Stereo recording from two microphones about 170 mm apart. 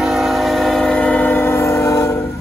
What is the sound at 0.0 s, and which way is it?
Train, centre (ahead or behind).